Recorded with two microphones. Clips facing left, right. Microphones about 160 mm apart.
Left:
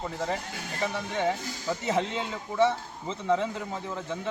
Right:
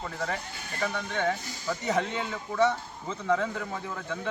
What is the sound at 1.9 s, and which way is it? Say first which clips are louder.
A man's voice: even; 25° left (ahead or behind).